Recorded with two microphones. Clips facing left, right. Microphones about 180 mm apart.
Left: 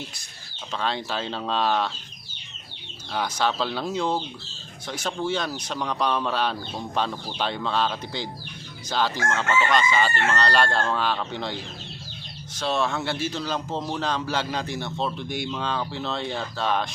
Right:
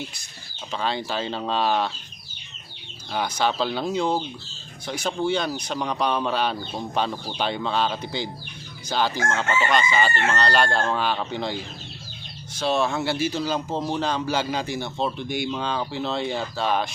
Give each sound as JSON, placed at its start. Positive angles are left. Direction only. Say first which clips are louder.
{"t": 0.7, "sound": "a man's voice", "louder": "right 1 dB", "side_deg": -5}
{"t": 3.1, "sound": "a man's voice", "louder": "right 1 dB", "side_deg": 0}